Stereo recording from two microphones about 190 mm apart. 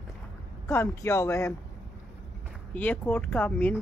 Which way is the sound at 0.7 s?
15° left (ahead or behind).